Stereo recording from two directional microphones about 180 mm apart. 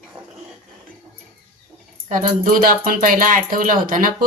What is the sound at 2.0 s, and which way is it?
A woman's voice, 50° right (ahead or behind).